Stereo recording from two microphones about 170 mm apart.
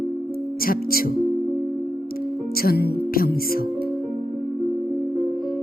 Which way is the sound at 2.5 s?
60° left (ahead or behind).